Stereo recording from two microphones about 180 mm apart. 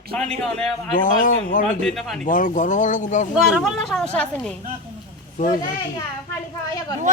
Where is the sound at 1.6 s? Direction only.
5° left (ahead or behind).